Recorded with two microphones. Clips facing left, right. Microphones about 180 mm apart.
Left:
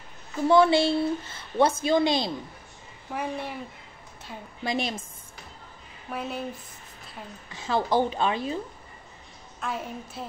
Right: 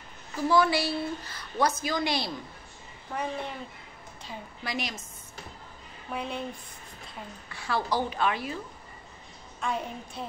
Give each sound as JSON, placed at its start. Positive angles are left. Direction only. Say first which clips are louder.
{"t": 0.5, "sound": "a woman's voice", "louder": "left 5 dB", "side_deg": 25}
{"t": 3.1, "sound": "speech", "louder": "left 1 dB", "side_deg": 5}
{"t": 4.6, "sound": "a woman's voice", "louder": "left 6 dB", "side_deg": 25}
{"t": 6.0, "sound": "a woman's voice", "louder": "left 1 dB", "side_deg": 5}
{"t": 7.4, "sound": "a woman's voice", "louder": "left 4 dB", "side_deg": 20}
{"t": 9.6, "sound": "a woman's voice", "louder": "right 1 dB", "side_deg": 0}